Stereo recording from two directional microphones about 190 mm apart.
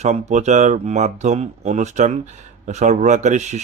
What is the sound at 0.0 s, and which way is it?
Speech, 35° right (ahead or behind).